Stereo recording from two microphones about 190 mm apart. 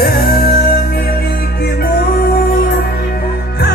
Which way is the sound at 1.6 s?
55° left (ahead or behind).